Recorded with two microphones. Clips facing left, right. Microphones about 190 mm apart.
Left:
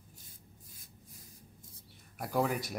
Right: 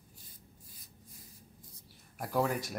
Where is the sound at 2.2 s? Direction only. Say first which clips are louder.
Even; centre (ahead or behind).